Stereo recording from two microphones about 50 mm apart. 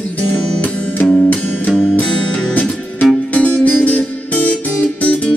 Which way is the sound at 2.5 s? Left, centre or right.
Left.